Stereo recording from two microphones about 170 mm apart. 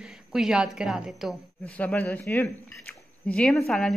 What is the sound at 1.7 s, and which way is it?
Speech, 10° left (ahead or behind).